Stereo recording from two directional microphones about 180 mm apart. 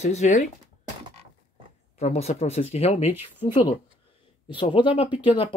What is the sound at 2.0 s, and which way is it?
Speech, 35° left (ahead or behind).